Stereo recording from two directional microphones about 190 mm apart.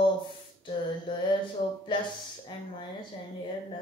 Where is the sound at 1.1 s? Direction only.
25° left (ahead or behind).